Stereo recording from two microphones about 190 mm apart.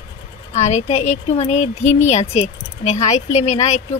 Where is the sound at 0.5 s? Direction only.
35° left (ahead or behind).